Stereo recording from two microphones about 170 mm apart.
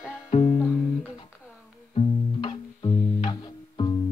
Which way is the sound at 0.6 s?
5° right (ahead or behind).